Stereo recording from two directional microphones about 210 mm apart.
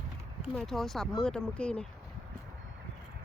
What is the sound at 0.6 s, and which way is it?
Speech, centre (ahead or behind).